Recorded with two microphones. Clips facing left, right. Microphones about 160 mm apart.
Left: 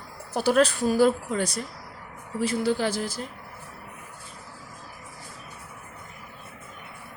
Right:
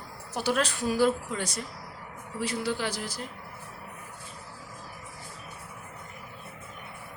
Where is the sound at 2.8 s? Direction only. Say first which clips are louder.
Left 6 dB; 25° left (ahead or behind).